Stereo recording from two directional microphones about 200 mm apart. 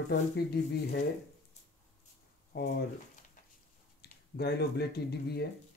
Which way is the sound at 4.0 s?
55° left (ahead or behind).